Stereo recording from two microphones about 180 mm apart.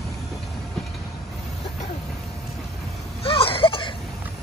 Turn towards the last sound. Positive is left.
turn(degrees=30)  # may be behind; listen again after turning